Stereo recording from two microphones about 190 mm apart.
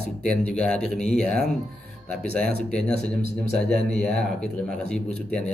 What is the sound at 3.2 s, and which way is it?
Speech, 50° right (ahead or behind).